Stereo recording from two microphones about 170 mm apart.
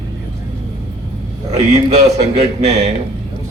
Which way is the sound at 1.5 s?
40° right (ahead or behind).